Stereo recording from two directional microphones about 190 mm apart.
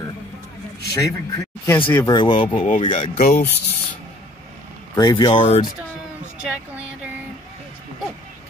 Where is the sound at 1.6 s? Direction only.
10° left (ahead or behind).